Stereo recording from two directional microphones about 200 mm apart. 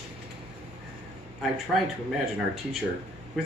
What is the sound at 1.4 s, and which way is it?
Speech, centre (ahead or behind).